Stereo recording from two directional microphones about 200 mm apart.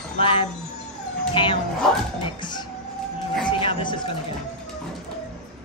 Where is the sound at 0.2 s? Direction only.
25° left (ahead or behind).